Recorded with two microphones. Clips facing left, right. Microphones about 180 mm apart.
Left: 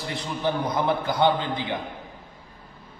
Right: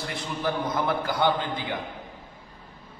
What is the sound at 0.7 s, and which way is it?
A man's voice, 25° left (ahead or behind).